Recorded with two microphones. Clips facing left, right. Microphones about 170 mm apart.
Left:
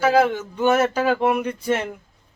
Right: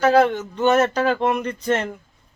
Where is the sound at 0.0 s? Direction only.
5° left (ahead or behind).